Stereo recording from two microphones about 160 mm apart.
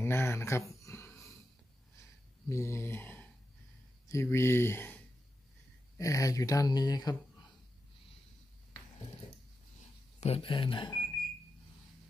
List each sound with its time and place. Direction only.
0.0 s a sound: 15° left (ahead or behind)
2.5 s speech: 15° left (ahead or behind)
10.2 s speech: 35° left (ahead or behind)